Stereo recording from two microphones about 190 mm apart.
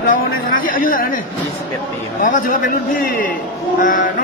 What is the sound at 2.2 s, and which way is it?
A man's voice, 45° left (ahead or behind).